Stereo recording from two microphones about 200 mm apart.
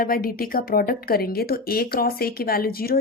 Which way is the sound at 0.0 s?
45° left (ahead or behind).